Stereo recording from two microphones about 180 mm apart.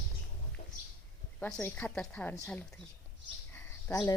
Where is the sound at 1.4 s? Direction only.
5° left (ahead or behind).